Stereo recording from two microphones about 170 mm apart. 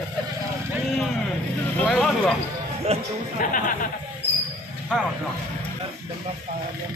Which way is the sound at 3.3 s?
55° left (ahead or behind).